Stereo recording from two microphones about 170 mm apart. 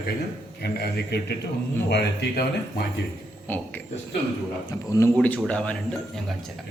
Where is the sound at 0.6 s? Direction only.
70° left (ahead or behind).